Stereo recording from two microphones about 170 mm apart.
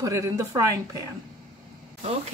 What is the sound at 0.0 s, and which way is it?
Speech, 15° right (ahead or behind).